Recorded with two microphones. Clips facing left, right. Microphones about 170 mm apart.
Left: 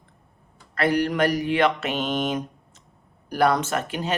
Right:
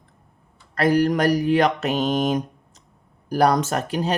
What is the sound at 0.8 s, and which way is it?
Speech, 40° right (ahead or behind).